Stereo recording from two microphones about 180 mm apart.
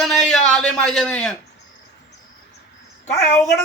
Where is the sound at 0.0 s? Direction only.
Centre (ahead or behind).